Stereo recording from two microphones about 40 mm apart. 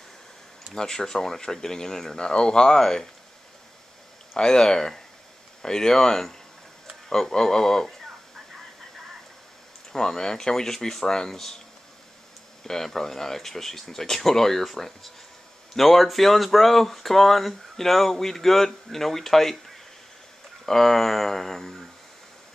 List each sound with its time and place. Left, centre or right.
0.7 s speech: centre
4.4 s speech: centre
9.9 s speech: centre
12.6 s speech: centre
20.6 s speech: centre